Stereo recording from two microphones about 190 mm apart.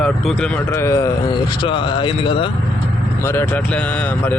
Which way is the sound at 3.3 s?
10° left (ahead or behind).